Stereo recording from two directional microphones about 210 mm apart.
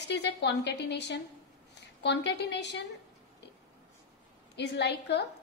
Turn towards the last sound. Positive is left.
turn(degrees=55)  # may be behind; listen again after turning